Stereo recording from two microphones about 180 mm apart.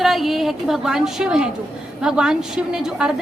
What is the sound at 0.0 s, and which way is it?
A woman's voice, centre (ahead or behind).